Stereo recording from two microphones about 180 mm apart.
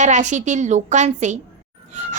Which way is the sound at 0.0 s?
40° right (ahead or behind).